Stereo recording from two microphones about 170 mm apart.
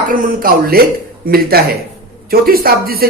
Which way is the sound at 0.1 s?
55° right (ahead or behind).